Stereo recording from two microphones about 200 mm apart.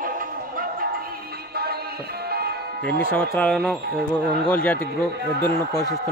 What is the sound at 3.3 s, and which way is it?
A man's voice, 5° left (ahead or behind).